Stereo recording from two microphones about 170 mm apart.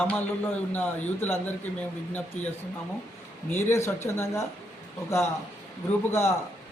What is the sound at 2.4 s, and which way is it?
Speech, 45° left (ahead or behind).